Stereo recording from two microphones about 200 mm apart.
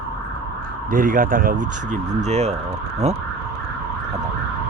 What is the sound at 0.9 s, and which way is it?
Speech, 45° right (ahead or behind).